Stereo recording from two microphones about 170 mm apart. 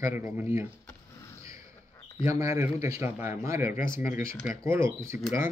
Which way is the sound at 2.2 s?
15° right (ahead or behind).